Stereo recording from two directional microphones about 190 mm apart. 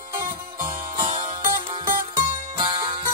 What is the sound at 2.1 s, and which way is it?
Music, 25° right (ahead or behind).